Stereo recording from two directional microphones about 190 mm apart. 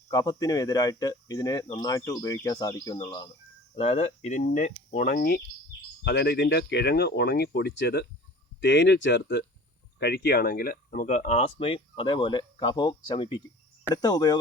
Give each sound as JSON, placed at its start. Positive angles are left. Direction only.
{"t": 0.1, "sound": "speech", "side_deg": 20}
{"t": 6.1, "sound": "speech", "side_deg": 65}
{"t": 10.0, "sound": "speech", "side_deg": 55}